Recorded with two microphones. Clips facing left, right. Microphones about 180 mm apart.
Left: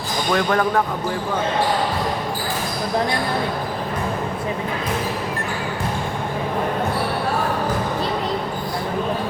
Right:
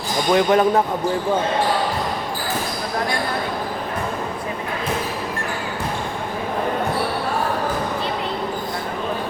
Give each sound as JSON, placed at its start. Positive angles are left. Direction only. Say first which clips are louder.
{"t": 0.3, "sound": "speech", "louder": "right 4 dB", "side_deg": -20}